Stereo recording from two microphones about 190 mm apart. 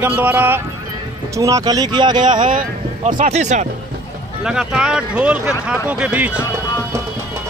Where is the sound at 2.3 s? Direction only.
45° right (ahead or behind).